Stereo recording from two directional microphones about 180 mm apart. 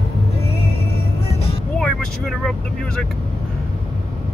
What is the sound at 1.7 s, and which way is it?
Vehicle, 5° left (ahead or behind).